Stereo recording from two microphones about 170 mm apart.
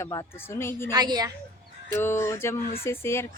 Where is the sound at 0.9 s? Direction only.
25° right (ahead or behind).